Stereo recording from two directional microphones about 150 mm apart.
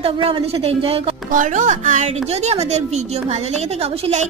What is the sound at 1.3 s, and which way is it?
A woman's voice, 55° right (ahead or behind).